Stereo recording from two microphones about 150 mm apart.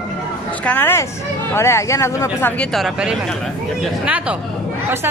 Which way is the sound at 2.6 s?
Centre (ahead or behind).